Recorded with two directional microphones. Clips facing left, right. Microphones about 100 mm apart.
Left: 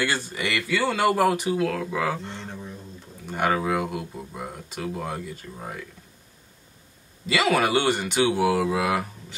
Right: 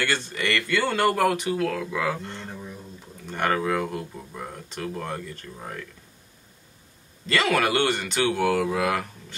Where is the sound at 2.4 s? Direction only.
5° right (ahead or behind).